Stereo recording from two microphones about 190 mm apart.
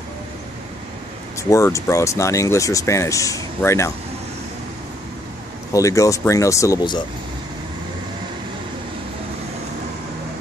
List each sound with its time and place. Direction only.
1.5 s speech: 15° left (ahead or behind)
5.7 s speech: 15° left (ahead or behind)